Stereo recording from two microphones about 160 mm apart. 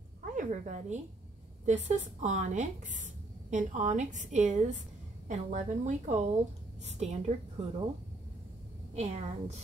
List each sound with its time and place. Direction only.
0.2 s a sound: 50° right (ahead or behind)
1.7 s a woman's voice: 45° right (ahead or behind)
8.9 s a woman's voice: 45° right (ahead or behind)